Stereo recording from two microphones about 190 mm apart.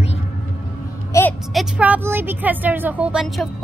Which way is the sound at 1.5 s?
5° right (ahead or behind).